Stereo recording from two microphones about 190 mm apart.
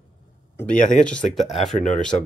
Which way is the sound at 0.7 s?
45° left (ahead or behind).